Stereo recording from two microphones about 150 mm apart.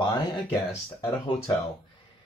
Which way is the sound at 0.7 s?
20° left (ahead or behind).